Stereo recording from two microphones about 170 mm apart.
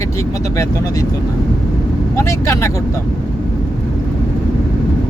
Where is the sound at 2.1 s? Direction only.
15° left (ahead or behind).